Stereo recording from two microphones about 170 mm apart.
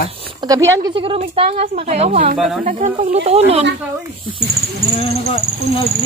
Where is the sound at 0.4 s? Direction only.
20° right (ahead or behind).